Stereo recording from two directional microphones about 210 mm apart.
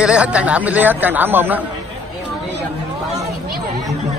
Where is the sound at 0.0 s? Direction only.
5° right (ahead or behind).